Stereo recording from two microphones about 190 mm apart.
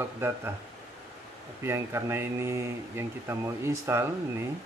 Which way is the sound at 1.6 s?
15° right (ahead or behind).